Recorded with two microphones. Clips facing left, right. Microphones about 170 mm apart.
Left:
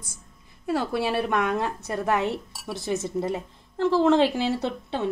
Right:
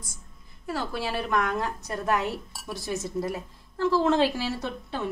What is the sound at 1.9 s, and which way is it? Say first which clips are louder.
A woman's voice: left 3 dB; 20° left (ahead or behind).